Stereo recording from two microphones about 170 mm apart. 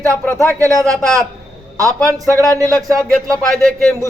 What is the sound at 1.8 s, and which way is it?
Speech, 20° right (ahead or behind).